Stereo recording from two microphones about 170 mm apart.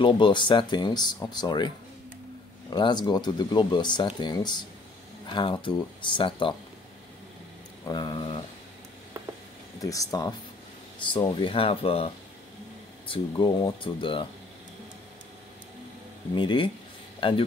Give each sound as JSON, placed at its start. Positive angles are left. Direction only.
{"t": 0.0, "sound": "speech", "side_deg": 30}
{"t": 2.7, "sound": "speech", "side_deg": 25}
{"t": 7.8, "sound": "speech", "side_deg": 25}
{"t": 9.8, "sound": "speech", "side_deg": 20}
{"t": 13.1, "sound": "speech", "side_deg": 25}
{"t": 16.3, "sound": "speech", "side_deg": 30}